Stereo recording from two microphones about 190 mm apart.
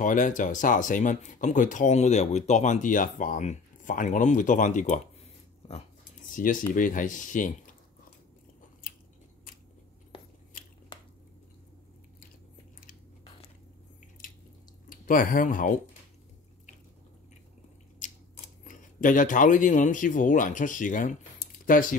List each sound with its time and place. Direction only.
0.0 s speech: 40° left (ahead or behind)
14.9 s speech: 45° left (ahead or behind)
17.9 s speech: 40° left (ahead or behind)